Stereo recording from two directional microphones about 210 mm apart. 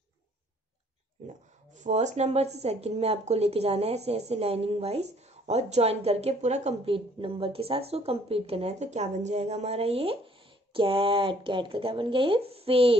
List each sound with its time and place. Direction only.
1.8 s speech: 35° right (ahead or behind)